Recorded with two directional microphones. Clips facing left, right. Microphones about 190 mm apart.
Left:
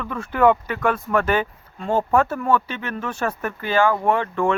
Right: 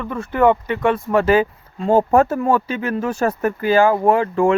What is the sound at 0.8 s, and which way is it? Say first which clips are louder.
Speech: right 4 dB; 25° right (ahead or behind).